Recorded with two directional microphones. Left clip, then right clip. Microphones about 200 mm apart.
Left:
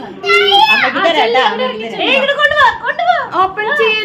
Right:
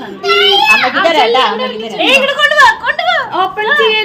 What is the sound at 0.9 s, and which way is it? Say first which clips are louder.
A woman's voice: right 2 dB; 15° right (ahead or behind).